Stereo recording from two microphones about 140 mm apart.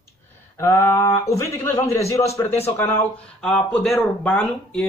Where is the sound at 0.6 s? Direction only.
20° left (ahead or behind).